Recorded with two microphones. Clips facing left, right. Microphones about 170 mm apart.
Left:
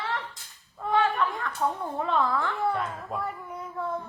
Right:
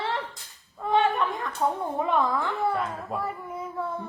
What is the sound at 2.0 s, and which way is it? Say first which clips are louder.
Speech: right 1 dB; 15° right (ahead or behind).